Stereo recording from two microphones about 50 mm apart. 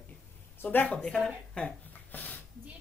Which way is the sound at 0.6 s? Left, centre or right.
Left.